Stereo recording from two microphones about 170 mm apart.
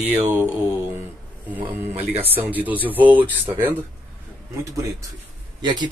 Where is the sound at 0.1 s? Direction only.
10° right (ahead or behind).